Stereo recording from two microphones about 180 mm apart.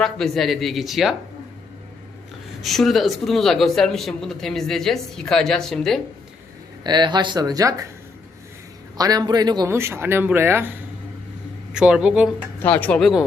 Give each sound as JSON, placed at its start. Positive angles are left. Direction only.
{"t": 0.0, "sound": "speech", "side_deg": 0}
{"t": 2.6, "sound": "speech", "side_deg": 0}
{"t": 6.8, "sound": "speech", "side_deg": -25}
{"t": 9.0, "sound": "speech", "side_deg": -20}
{"t": 12.5, "sound": "speech", "side_deg": 10}